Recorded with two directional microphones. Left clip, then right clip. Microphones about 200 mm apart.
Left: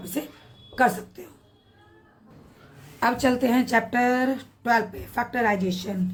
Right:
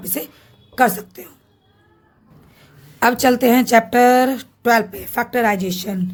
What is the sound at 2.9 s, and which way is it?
A woman's voice, 55° right (ahead or behind).